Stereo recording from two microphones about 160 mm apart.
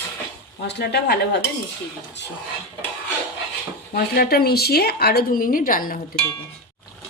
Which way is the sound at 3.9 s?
80° left.